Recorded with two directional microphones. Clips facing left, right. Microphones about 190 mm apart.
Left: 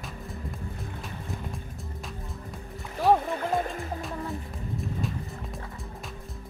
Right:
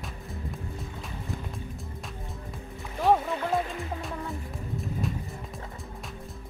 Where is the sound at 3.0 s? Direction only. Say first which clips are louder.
Left 1 dB; centre (ahead or behind).